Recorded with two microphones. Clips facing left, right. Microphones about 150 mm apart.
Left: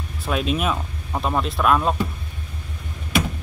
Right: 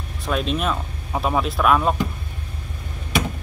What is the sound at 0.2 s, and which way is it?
Speech, 5° left (ahead or behind).